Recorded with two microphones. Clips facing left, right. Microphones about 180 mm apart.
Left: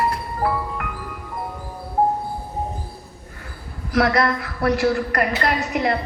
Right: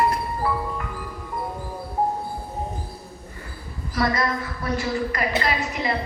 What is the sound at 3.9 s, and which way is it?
A woman's voice, 75° left (ahead or behind).